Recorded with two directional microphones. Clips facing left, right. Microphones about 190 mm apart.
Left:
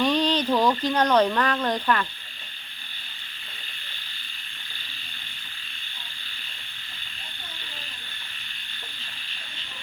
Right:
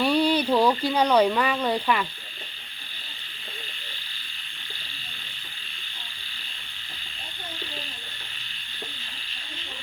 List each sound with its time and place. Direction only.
0.0 s speech: 10° right (ahead or behind)